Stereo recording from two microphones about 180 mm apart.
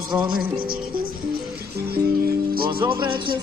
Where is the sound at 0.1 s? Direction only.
10° right (ahead or behind).